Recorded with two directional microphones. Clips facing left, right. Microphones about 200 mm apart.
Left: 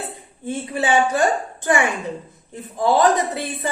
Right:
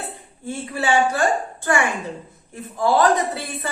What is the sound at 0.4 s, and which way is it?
A woman's voice, 20° left (ahead or behind).